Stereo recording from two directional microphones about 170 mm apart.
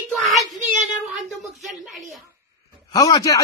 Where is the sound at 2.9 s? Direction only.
25° left (ahead or behind).